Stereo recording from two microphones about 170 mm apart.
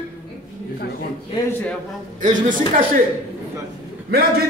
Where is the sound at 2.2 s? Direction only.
50° right (ahead or behind).